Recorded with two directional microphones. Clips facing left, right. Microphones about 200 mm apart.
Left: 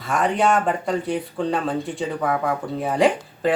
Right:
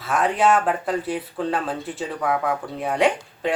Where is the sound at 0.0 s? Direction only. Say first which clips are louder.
Even; centre (ahead or behind).